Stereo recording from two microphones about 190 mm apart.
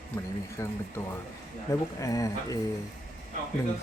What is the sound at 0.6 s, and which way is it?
Speech, 15° left (ahead or behind).